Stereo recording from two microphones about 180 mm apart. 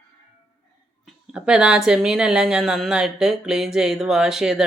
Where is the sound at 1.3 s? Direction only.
5° right (ahead or behind).